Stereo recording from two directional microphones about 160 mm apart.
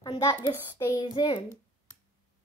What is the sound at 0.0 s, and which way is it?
A child's voice, 25° left (ahead or behind).